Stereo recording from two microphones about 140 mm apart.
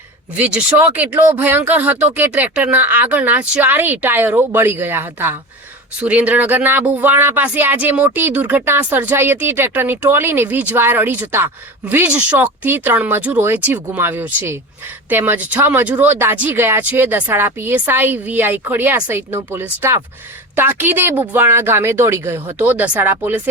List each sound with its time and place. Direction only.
0.3 s speech: 10° right (ahead or behind)